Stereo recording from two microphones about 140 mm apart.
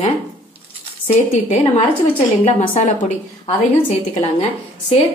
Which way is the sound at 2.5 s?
60° left (ahead or behind).